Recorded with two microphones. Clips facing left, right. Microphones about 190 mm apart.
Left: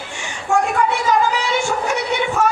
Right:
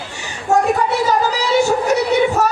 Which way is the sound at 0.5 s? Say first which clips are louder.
Right 2 dB; 40° right (ahead or behind).